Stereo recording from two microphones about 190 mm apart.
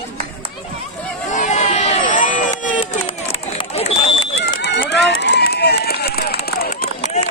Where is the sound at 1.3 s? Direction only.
40° left (ahead or behind).